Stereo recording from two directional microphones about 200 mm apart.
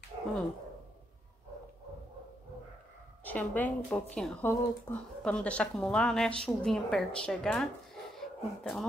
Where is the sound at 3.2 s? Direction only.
10° left (ahead or behind).